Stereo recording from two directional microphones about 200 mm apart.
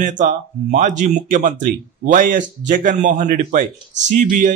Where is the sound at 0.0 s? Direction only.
40° right (ahead or behind).